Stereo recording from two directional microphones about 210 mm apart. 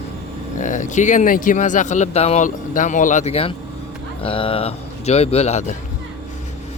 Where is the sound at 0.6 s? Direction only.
35° left (ahead or behind).